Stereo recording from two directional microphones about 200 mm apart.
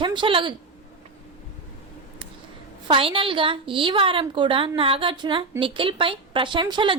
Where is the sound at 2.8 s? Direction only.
25° right (ahead or behind).